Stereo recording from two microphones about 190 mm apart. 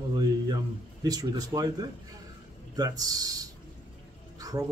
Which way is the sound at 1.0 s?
20° right (ahead or behind).